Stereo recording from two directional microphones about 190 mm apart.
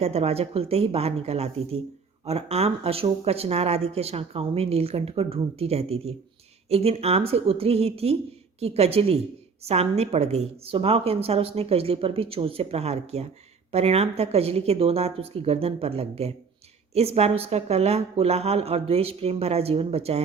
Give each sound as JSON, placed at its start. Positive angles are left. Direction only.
{"t": 0.0, "sound": "speech", "side_deg": -35}